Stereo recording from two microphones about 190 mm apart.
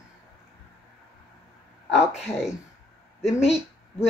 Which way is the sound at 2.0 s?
35° left (ahead or behind).